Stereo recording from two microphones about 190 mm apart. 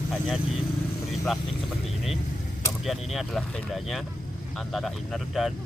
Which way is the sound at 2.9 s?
Centre (ahead or behind).